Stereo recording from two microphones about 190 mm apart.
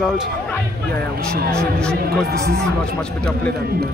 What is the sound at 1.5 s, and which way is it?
Speech, 5° left (ahead or behind).